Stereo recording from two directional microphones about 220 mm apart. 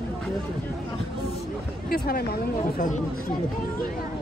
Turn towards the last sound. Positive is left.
turn(degrees=35)  # may be behind; listen again after turning